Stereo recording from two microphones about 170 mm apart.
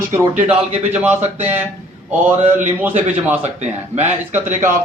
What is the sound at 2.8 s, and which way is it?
Speech, 10° right (ahead or behind).